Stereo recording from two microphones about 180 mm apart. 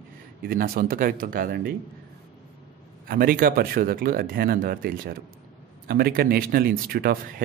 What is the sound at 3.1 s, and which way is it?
Speech, 50° right (ahead or behind).